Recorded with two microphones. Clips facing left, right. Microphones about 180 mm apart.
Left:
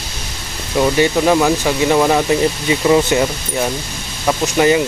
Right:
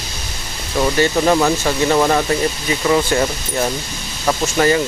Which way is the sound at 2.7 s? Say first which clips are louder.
Left 3 dB; 20° left (ahead or behind).